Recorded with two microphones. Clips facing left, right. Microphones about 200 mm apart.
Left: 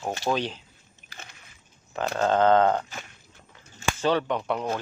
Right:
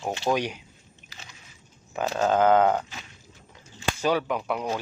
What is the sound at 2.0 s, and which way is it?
Speech, 10° right (ahead or behind).